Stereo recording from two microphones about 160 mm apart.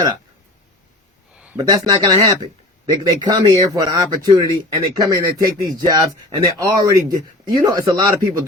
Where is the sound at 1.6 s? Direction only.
30° right (ahead or behind).